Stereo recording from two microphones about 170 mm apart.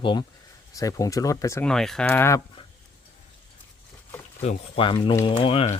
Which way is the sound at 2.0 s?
15° left (ahead or behind).